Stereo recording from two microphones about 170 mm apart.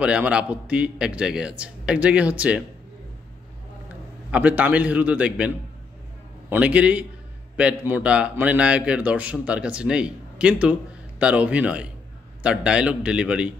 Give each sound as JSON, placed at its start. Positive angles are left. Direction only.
{"t": 0.0, "sound": "speech", "side_deg": -5}
{"t": 4.3, "sound": "speech", "side_deg": -10}
{"t": 6.5, "sound": "a man's voice", "side_deg": -5}